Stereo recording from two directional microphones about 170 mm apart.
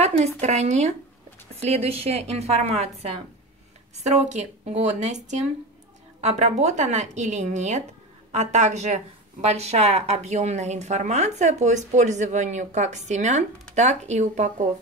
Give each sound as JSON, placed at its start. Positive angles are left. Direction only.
{"t": 0.0, "sound": "a woman's voice", "side_deg": -40}